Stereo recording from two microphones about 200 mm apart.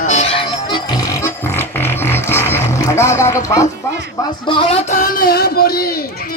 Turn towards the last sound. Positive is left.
turn(degrees=50)  # may be behind; listen again after turning